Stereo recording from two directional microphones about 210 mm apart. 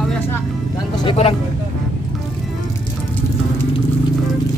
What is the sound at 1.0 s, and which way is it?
Speech, 25° left (ahead or behind).